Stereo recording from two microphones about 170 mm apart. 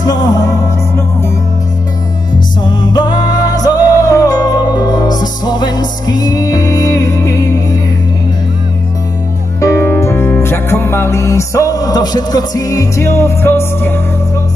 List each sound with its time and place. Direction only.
0.0 s music: 20° left (ahead or behind)
2.6 s music: 25° left (ahead or behind)
9.6 s music: 15° left (ahead or behind)